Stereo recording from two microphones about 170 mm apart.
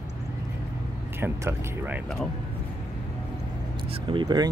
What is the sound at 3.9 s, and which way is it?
Speech, 30° right (ahead or behind).